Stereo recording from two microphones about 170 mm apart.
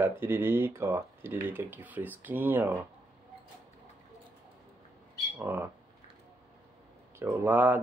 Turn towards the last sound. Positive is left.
turn(degrees=-10)  # may be behind; listen again after turning